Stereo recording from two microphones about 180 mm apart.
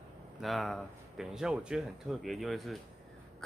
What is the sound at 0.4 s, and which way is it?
Speech, centre (ahead or behind).